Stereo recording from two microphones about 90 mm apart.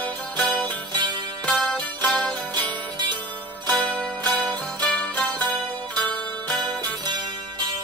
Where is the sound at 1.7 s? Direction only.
15° left (ahead or behind).